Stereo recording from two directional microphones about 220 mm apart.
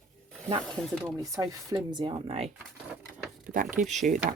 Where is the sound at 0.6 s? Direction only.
5° left (ahead or behind).